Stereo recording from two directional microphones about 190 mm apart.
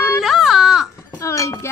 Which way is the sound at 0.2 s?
Centre (ahead or behind).